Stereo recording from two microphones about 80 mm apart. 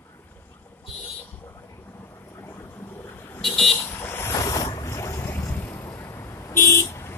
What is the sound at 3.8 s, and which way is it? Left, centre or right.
Vehicle, left.